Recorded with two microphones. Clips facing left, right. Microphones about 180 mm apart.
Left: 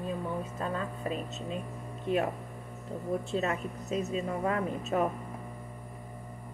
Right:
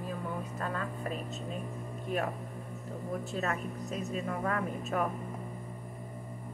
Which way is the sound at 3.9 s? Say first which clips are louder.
Left 5 dB; 25° left (ahead or behind).